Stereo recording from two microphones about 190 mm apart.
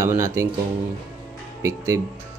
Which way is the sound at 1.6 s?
15° right (ahead or behind).